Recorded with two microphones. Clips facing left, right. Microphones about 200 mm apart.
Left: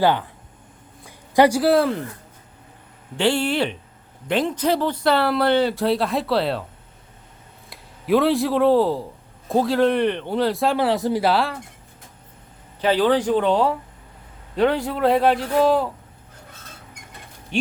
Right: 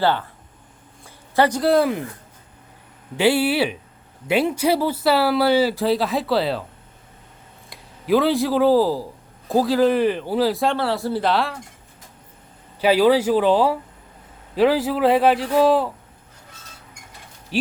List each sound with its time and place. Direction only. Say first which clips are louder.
0.0 s speech: left 1 dB; 15° left (ahead or behind)
1.0 s a sound: left 3 dB; 15° left (ahead or behind)
3.2 s speech: right 2 dB; 5° right (ahead or behind)
7.7 s speech: even; centre (ahead or behind)
10.8 s speech: left 2 dB; 20° left (ahead or behind)
11.2 s speech: left 1 dB; centre (ahead or behind)
12.8 s speech: right 3 dB; 10° right (ahead or behind)
17.5 s speech: right 1 dB; 5° right (ahead or behind)